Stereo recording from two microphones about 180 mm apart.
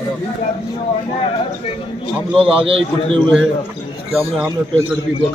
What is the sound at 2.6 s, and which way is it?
Speech, 30° right (ahead or behind).